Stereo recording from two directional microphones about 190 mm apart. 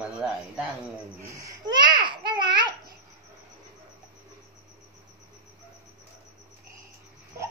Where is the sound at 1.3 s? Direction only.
15° right (ahead or behind).